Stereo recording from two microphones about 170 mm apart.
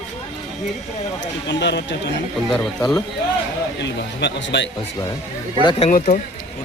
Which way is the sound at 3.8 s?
90° left.